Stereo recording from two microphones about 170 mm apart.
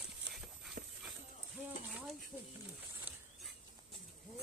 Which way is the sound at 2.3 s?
10° right (ahead or behind).